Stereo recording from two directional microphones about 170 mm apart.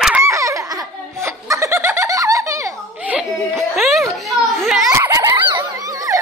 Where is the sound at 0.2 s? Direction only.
15° right (ahead or behind); by 4.0 s centre (ahead or behind).